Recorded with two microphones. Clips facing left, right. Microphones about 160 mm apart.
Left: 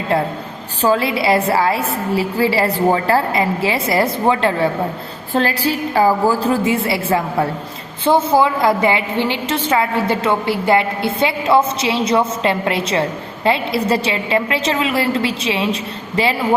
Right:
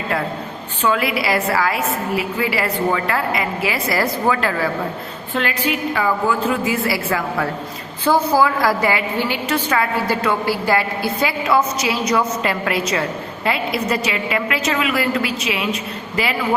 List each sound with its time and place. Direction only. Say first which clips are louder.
0.8 s a woman's voice: left 3 dB; 30° left (ahead or behind)